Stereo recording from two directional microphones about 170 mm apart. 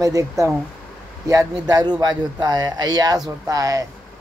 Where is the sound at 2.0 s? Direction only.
25° right (ahead or behind).